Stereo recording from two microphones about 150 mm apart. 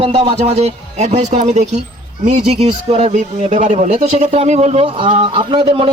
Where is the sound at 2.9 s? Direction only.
50° right (ahead or behind).